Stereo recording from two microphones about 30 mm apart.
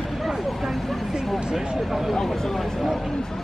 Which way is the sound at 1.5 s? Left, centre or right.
Centre.